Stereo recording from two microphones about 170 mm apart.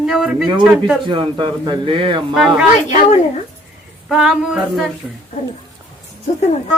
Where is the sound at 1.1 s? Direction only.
30° right (ahead or behind).